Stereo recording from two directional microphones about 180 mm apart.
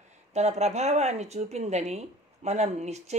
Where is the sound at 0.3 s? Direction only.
40° right (ahead or behind).